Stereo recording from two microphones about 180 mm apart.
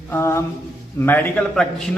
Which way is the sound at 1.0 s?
10° left (ahead or behind).